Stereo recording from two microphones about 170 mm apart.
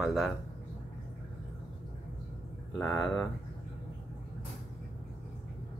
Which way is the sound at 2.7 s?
5° left (ahead or behind).